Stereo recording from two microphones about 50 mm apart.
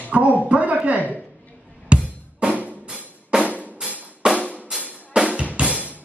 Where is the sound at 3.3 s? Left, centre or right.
Centre.